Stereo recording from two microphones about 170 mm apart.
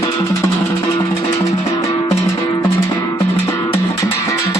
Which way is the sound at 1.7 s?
20° left (ahead or behind).